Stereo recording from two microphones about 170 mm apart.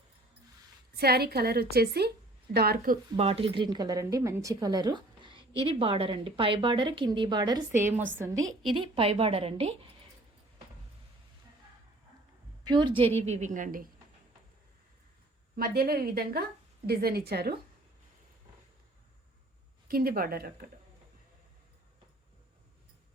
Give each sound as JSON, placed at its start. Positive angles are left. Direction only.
{"t": 0.9, "sound": "a woman's voice", "side_deg": -65}
{"t": 3.2, "sound": "speech", "side_deg": -35}
{"t": 7.7, "sound": "a woman's voice", "side_deg": -15}
{"t": 8.7, "sound": "a woman's voice", "side_deg": -30}
{"t": 12.6, "sound": "a woman's voice", "side_deg": -25}
{"t": 15.5, "sound": "speech", "side_deg": -65}
{"t": 19.9, "sound": "speech", "side_deg": -60}